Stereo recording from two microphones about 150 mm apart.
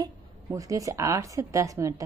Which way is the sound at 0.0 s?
20° right (ahead or behind).